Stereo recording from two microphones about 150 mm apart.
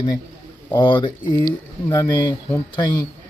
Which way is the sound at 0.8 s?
30° left (ahead or behind).